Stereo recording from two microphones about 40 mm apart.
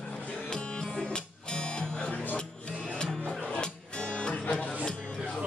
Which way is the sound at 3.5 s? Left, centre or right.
Left.